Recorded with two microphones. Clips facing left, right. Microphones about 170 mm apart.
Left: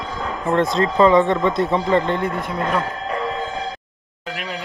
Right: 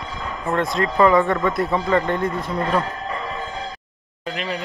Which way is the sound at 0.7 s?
25° left (ahead or behind).